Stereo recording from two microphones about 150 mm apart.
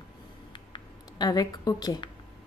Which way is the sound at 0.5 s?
30° left (ahead or behind).